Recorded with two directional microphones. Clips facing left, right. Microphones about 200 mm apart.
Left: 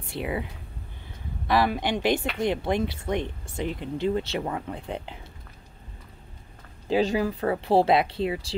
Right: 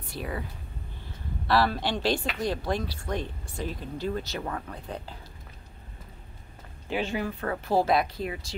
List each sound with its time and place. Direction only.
0.1 s speech: 20° left (ahead or behind)
1.5 s speech: 15° left (ahead or behind)
7.0 s speech: 35° left (ahead or behind)